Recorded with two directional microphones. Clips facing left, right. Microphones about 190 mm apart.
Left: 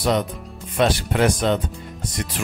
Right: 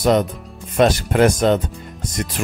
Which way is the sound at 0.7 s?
45° right (ahead or behind).